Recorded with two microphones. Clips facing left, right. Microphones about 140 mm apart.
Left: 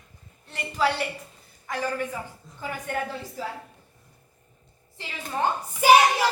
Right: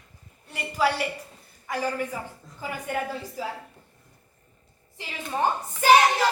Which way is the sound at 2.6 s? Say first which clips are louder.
Right 1 dB; 10° right (ahead or behind).